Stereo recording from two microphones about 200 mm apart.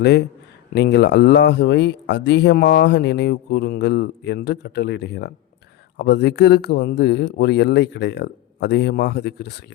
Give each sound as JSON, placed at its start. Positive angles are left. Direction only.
{"t": 0.7, "sound": "speech", "side_deg": 55}